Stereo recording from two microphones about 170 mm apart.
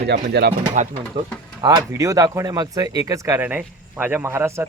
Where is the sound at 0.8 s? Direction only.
45° right (ahead or behind).